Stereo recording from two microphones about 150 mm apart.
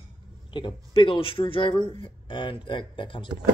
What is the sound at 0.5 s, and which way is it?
Speech, 35° left (ahead or behind).